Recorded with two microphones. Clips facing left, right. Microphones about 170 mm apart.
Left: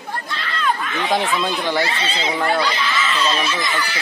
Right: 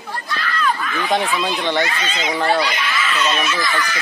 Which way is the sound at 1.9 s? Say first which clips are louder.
Even; 30° left (ahead or behind).